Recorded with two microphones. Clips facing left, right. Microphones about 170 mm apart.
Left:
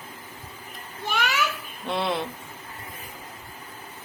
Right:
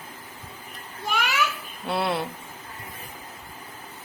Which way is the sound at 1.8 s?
5° right (ahead or behind).